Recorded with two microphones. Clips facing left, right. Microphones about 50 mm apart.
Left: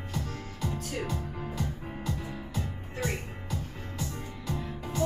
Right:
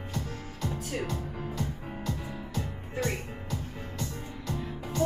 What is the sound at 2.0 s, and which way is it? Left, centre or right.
Music, centre.